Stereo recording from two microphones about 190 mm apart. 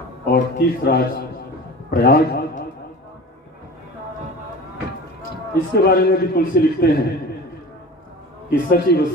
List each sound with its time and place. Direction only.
0.3 s a man's voice: 55° left (ahead or behind)
1.9 s a sound: 55° left (ahead or behind)
5.5 s a man's voice: 55° left (ahead or behind)
8.5 s a man's voice: 50° left (ahead or behind)